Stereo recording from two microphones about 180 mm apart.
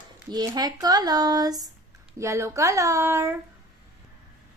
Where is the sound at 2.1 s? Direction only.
15° right (ahead or behind).